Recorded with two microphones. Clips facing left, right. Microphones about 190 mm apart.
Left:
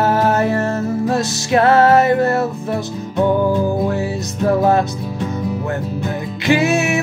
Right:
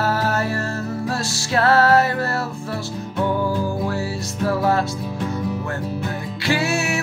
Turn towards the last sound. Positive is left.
turn(degrees=20)  # may be behind; listen again after turning